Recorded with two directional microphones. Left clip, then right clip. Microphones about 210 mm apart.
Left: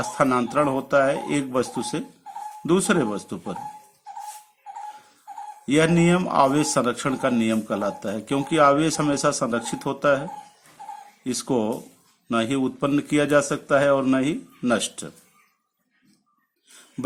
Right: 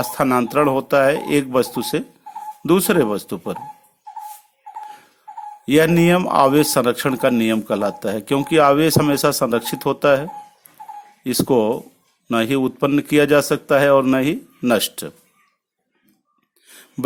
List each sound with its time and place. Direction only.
0.0 s a man's voice: 35° right (ahead or behind)
5.6 s a man's voice: 35° right (ahead or behind)